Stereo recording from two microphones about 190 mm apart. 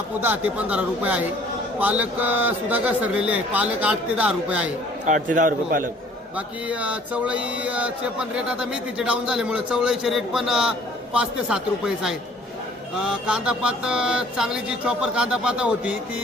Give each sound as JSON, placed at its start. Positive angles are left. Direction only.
{"t": 0.2, "sound": "a man's voice", "side_deg": -10}
{"t": 5.0, "sound": "a man's voice", "side_deg": -45}
{"t": 6.3, "sound": "speech", "side_deg": -5}